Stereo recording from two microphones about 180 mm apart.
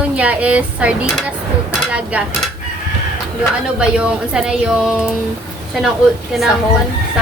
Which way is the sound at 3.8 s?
5° right (ahead or behind).